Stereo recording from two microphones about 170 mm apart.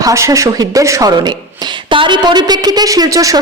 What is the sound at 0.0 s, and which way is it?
A woman's voice, 20° right (ahead or behind).